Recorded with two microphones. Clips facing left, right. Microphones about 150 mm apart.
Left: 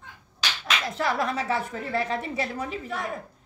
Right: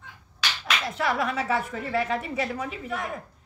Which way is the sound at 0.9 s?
35° left (ahead or behind).